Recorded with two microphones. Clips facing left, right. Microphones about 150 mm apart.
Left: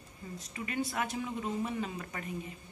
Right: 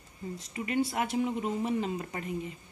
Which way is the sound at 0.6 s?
20° right (ahead or behind).